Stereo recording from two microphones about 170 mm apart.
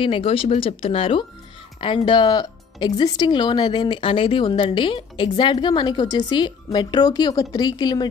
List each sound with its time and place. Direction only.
0.0 s speech: 30° left (ahead or behind)